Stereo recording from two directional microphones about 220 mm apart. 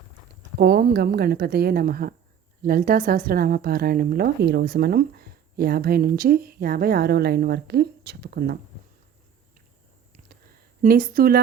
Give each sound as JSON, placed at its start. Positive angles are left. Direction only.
{"t": 0.6, "sound": "a woman's voice", "side_deg": -45}
{"t": 10.8, "sound": "speech", "side_deg": -40}